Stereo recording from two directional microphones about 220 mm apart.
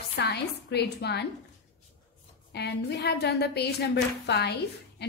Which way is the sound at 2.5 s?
50° left (ahead or behind).